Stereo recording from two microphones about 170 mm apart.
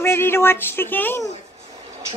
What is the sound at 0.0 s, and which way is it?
Speech, 15° left (ahead or behind).